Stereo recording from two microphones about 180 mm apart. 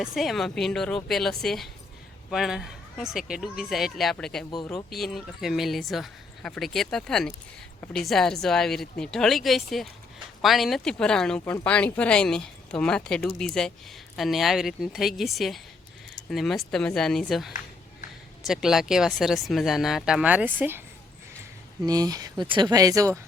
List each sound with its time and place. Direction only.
0.0 s speech: centre (ahead or behind)
21.8 s speech: 20° right (ahead or behind)